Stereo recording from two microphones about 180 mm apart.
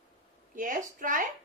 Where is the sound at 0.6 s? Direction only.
50° right (ahead or behind).